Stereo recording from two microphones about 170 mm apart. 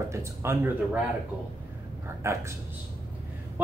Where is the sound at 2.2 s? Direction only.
15° right (ahead or behind).